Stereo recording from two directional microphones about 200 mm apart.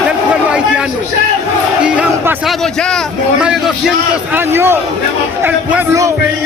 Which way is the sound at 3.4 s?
5° right (ahead or behind).